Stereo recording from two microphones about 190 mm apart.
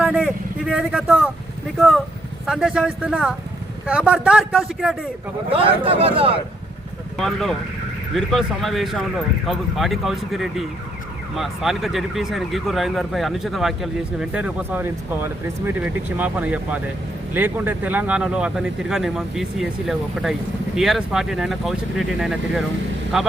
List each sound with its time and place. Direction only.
0.0 s speech: 5° right (ahead or behind)
2.5 s speech: 5° right (ahead or behind)
5.5 s speech: 30° right (ahead or behind)
7.2 s speech: centre (ahead or behind)